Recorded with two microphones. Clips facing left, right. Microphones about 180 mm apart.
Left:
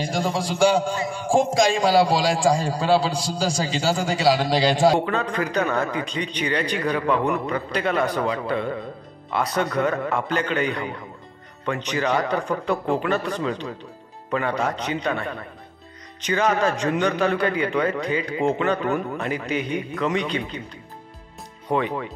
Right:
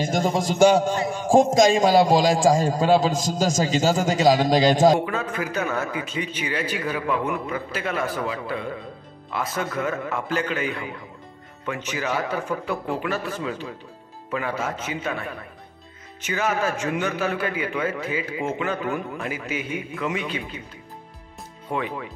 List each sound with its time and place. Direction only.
0.0 s a man's voice: 45° right (ahead or behind)
5.0 s a man's voice: 5° right (ahead or behind)
21.7 s a man's voice: 5° right (ahead or behind)